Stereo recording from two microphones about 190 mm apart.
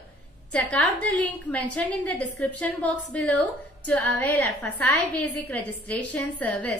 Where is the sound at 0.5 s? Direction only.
5° left (ahead or behind).